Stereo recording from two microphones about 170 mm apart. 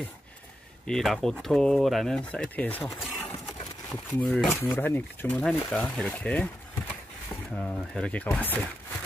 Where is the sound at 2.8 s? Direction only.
Centre (ahead or behind).